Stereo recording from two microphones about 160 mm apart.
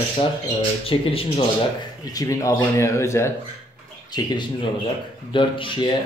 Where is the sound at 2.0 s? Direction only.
20° left (ahead or behind).